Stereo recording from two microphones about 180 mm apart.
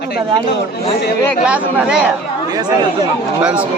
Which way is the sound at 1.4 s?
5° right (ahead or behind).